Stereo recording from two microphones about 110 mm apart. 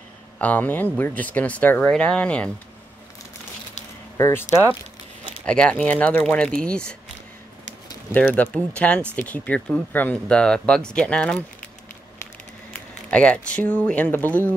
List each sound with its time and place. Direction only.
0.4 s speech: 15° left (ahead or behind)
4.2 s speech: 20° left (ahead or behind)
5.4 s speech: 10° left (ahead or behind)
8.1 s speech: 15° left (ahead or behind)
13.1 s speech: 10° left (ahead or behind)